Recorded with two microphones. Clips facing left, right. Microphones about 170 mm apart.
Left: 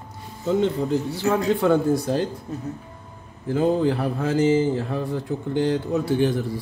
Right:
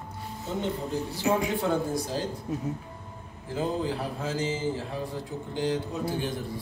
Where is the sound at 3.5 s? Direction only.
60° left (ahead or behind).